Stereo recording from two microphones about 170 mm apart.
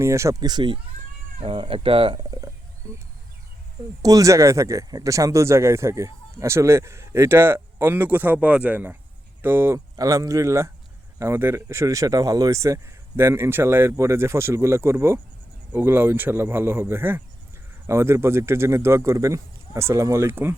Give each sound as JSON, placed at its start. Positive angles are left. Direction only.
{"t": 0.0, "sound": "speech", "side_deg": -15}
{"t": 4.0, "sound": "speech", "side_deg": -20}